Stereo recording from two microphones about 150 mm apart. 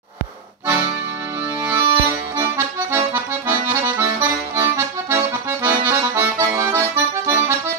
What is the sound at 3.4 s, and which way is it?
Accordion, 15° right (ahead or behind).